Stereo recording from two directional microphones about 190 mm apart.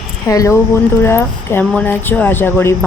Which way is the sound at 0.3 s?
15° left (ahead or behind).